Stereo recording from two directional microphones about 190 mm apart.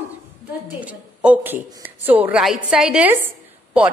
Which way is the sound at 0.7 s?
10° right (ahead or behind).